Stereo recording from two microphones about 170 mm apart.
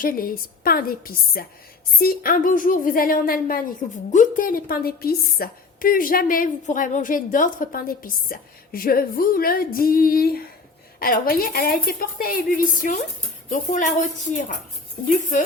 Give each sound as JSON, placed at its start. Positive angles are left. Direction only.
{"t": 0.0, "sound": "a woman's voice", "side_deg": 60}